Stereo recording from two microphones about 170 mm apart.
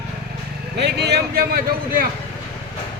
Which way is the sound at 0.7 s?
75° right (ahead or behind).